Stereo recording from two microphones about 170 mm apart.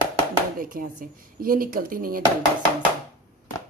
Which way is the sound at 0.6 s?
55° right (ahead or behind).